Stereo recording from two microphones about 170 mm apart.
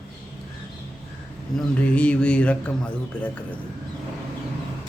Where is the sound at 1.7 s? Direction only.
5° left (ahead or behind).